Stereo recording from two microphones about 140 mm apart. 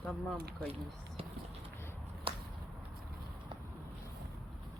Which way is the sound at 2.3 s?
40° right (ahead or behind).